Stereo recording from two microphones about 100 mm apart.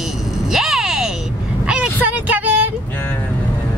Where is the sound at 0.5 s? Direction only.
5° right (ahead or behind).